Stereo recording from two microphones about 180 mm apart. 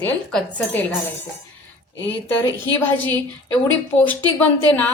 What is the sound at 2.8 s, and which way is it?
Speech, 10° left (ahead or behind).